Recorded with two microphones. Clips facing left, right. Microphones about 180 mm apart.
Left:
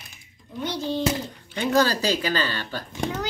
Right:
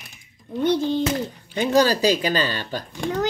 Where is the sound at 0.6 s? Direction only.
55° right (ahead or behind).